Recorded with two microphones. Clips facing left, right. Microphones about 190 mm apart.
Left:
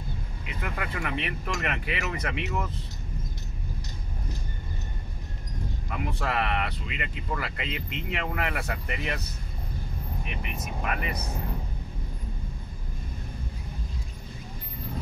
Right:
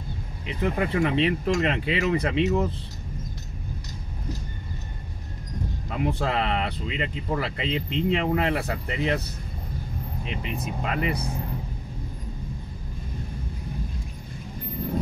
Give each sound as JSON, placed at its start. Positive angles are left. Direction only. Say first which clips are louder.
{"t": 0.5, "sound": "speech", "louder": "right 9 dB", "side_deg": -30}
{"t": 5.9, "sound": "speech", "louder": "right 5 dB", "side_deg": -30}
{"t": 10.2, "sound": "speech", "louder": "right 7 dB", "side_deg": -25}